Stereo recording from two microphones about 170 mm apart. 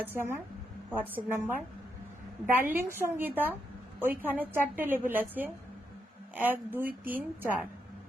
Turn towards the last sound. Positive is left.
turn(degrees=-10)  # may be behind; listen again after turning